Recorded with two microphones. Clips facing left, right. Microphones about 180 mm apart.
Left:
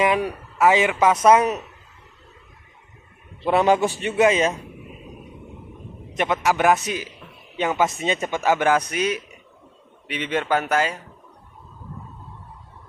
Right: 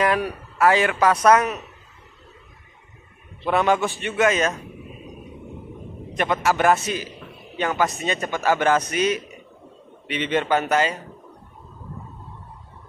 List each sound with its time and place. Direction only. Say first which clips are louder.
0.0 s a man's voice: left 1 dB; 20° left (ahead or behind)
3.4 s a man's voice: left 2 dB; 30° left (ahead or behind)
6.4 s a man's voice: even; 15° left (ahead or behind)